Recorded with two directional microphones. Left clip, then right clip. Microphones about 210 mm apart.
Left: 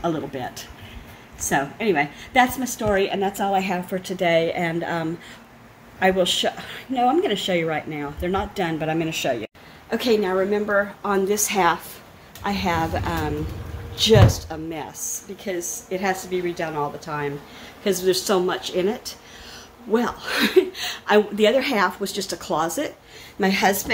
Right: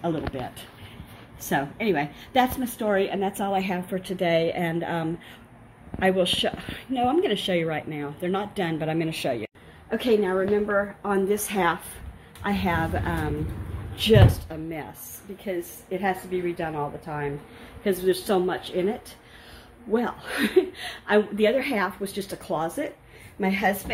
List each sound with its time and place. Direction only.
0.0 s speech: 5° right (ahead or behind)
1.5 s a woman's voice: 5° right (ahead or behind); by 23.7 s 15° left (ahead or behind)